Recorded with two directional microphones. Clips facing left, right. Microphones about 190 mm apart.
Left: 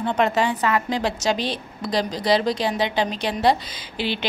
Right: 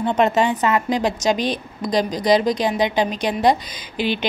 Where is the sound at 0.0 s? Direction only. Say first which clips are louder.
Right 3 dB; 20° right (ahead or behind).